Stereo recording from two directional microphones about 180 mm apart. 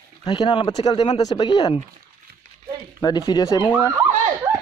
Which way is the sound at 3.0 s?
25° left (ahead or behind).